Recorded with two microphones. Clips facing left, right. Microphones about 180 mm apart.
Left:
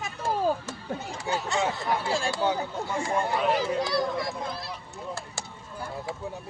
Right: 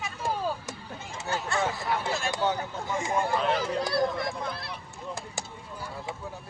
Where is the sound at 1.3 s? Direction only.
20° left (ahead or behind).